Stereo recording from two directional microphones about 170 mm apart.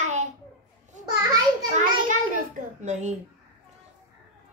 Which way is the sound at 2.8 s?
45° right (ahead or behind).